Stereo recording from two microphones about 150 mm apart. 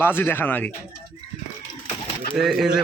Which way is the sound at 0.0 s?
15° left (ahead or behind).